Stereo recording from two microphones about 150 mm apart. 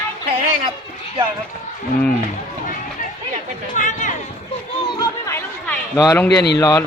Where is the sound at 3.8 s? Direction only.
55° left (ahead or behind).